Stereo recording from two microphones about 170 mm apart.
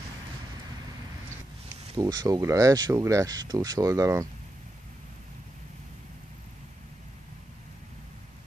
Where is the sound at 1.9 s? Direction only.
25° right (ahead or behind).